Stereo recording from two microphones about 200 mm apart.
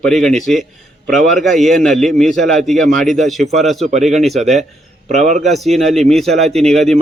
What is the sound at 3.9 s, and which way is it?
A man's voice, 35° right (ahead or behind).